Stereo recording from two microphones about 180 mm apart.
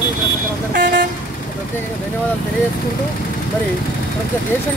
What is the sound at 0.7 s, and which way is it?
Speech, 50° right (ahead or behind).